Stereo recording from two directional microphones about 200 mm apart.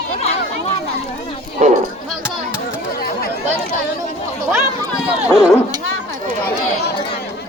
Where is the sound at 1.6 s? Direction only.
35° right (ahead or behind).